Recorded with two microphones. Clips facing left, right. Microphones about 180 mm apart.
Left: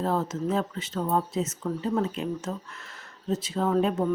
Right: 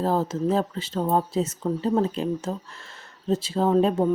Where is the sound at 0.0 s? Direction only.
30° right (ahead or behind).